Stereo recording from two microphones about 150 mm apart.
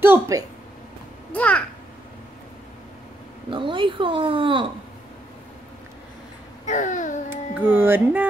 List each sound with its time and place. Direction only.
0.0 s a woman's voice: 20° right (ahead or behind)
1.3 s babbling: 10° left (ahead or behind)
3.4 s a sound: 35° right (ahead or behind)
6.6 s babbling: 55° left (ahead or behind)
7.2 s music: 15° right (ahead or behind)